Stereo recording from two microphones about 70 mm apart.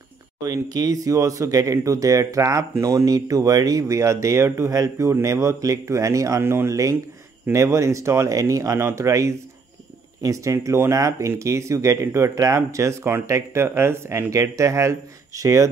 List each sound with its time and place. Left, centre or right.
0.4 s speech: right
6.4 s speech: right